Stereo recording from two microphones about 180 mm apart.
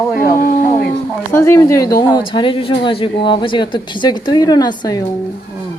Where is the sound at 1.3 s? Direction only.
15° left (ahead or behind).